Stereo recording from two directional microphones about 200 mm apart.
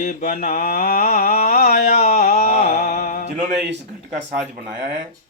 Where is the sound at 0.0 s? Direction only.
40° left (ahead or behind).